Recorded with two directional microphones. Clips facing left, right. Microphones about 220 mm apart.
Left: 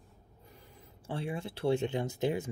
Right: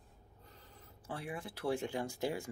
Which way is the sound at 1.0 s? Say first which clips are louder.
Left 6 dB; 25° left (ahead or behind).